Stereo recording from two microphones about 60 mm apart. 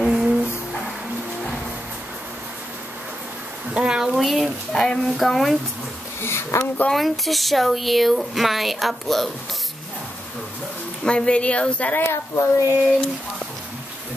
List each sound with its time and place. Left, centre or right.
0.0 s a sound: centre
3.7 s a sound: centre
4.1 s speech: centre
4.7 s speech: centre
6.2 s a child's voice: left
6.9 s speech: centre
11.1 s speech: centre
11.9 s a child's voice: left